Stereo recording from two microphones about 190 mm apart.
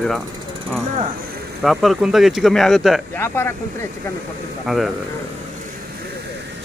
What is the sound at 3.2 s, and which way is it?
Speech, 10° left (ahead or behind).